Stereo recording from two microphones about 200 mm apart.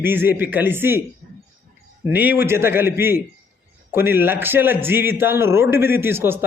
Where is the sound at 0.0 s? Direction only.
10° right (ahead or behind).